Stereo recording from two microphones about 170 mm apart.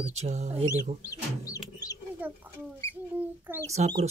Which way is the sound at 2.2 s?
10° right (ahead or behind).